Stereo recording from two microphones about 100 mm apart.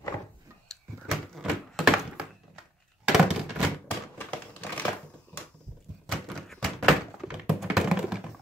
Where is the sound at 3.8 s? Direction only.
15° left (ahead or behind).